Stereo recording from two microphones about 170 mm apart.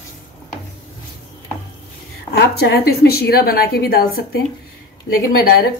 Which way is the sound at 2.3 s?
70° left (ahead or behind).